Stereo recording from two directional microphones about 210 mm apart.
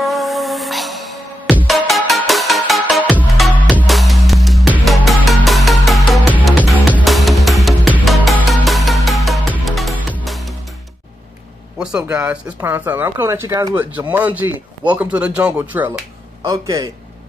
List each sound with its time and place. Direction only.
0.0 s music: centre (ahead or behind)
11.8 s speech: 5° right (ahead or behind)